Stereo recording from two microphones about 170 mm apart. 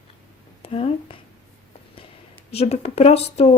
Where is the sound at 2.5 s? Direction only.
35° left (ahead or behind).